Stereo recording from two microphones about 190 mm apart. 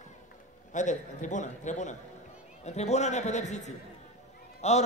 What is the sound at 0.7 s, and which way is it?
A man's voice, 40° left (ahead or behind).